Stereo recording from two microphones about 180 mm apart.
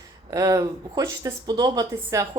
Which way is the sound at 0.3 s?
20° right (ahead or behind).